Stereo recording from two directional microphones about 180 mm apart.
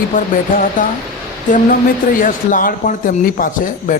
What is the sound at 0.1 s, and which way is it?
Speech, 50° left (ahead or behind).